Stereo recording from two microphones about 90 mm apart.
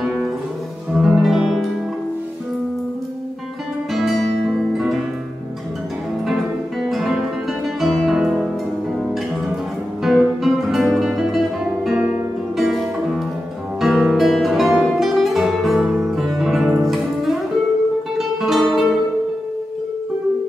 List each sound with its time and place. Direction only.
0.0 s music: centre (ahead or behind)
3.9 s music: centre (ahead or behind)
6.2 s music: 5° right (ahead or behind)
10.0 s music: centre (ahead or behind)